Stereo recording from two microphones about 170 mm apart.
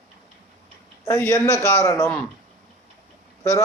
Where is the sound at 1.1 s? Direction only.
15° left (ahead or behind).